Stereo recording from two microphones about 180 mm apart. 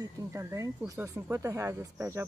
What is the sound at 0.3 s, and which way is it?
Speech, 15° right (ahead or behind).